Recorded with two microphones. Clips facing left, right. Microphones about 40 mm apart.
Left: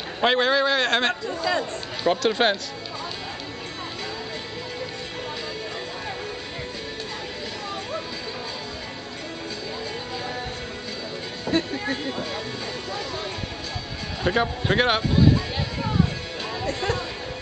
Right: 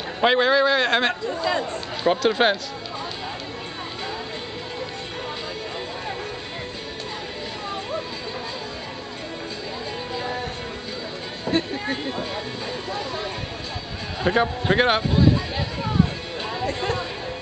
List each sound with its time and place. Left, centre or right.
0.2 s a man's voice: centre
1.2 s speech: right
2.0 s a man's voice: centre
10.1 s music: centre
11.7 s speech: centre
12.9 s a sound: right
14.2 s a man's voice: centre
15.5 s a sound: centre
16.4 s music: right